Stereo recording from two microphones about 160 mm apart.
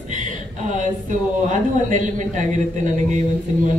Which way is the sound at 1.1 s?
50° right (ahead or behind).